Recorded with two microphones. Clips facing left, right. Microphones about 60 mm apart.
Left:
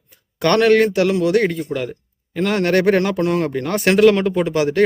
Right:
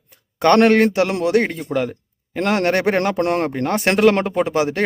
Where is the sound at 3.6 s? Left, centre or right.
Right.